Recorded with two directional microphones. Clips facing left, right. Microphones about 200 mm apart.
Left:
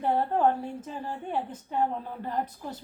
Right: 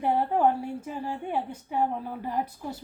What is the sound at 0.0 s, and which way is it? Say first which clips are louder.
A woman's voice: right 1 dB; 10° right (ahead or behind).